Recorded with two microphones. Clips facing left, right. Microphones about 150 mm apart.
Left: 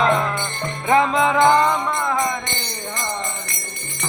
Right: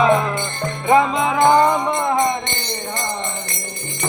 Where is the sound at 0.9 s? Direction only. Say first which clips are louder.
Right 1 dB; 5° right (ahead or behind); by 3.1 s 30° right (ahead or behind).